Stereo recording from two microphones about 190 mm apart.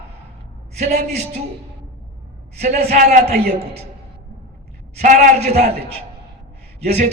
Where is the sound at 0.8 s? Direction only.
35° right (ahead or behind).